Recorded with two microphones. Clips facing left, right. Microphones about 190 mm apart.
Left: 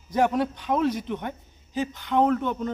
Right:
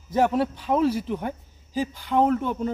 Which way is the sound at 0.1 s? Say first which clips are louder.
Right 1 dB; 5° right (ahead or behind).